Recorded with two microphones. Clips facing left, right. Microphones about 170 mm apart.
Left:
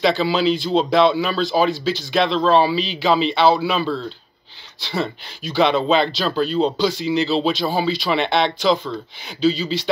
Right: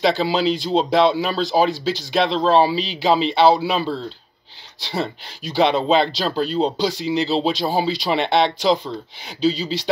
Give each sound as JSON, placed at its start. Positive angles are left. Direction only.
{"t": 0.0, "sound": "speech", "side_deg": -40}